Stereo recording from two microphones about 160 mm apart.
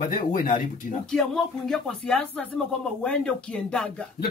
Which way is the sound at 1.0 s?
5° left (ahead or behind).